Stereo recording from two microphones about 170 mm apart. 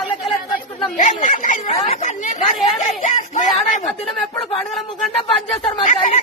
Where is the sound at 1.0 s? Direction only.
45° left (ahead or behind).